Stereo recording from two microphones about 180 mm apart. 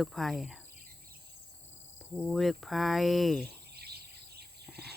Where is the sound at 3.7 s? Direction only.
65° right (ahead or behind).